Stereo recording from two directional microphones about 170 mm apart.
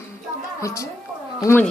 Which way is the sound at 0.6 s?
20° left (ahead or behind).